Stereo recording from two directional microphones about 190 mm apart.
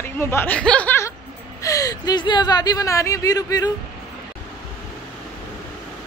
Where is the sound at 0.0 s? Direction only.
10° left (ahead or behind).